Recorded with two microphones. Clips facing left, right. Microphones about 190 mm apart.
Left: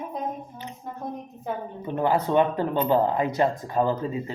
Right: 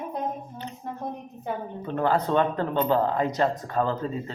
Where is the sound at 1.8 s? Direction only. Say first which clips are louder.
Left 1 dB; 15° left (ahead or behind).